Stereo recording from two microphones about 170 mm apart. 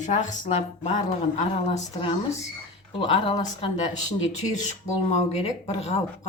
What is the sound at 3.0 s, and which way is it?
Speech, 30° left (ahead or behind).